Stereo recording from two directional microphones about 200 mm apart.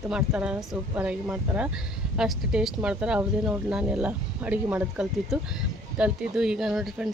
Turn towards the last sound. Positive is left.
turn(degrees=0)  # may be behind; listen again after turning